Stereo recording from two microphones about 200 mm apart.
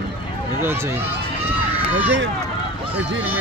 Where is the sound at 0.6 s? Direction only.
10° right (ahead or behind).